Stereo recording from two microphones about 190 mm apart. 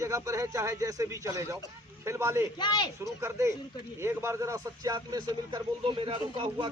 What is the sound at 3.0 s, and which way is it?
A man's voice, 15° right (ahead or behind).